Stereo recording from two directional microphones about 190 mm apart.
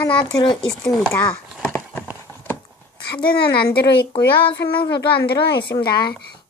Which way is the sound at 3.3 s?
60° left (ahead or behind).